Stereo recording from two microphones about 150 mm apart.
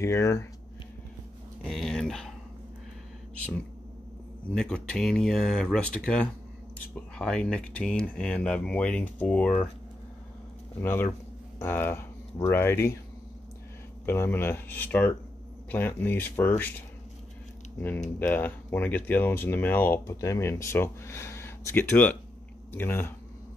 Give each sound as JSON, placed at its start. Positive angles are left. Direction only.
{"t": 0.0, "sound": "speech", "side_deg": 20}
{"t": 1.6, "sound": "speech", "side_deg": 0}
{"t": 4.5, "sound": "speech", "side_deg": 5}
{"t": 10.8, "sound": "speech", "side_deg": 15}
{"t": 14.0, "sound": "speech", "side_deg": 15}
{"t": 17.7, "sound": "speech", "side_deg": 15}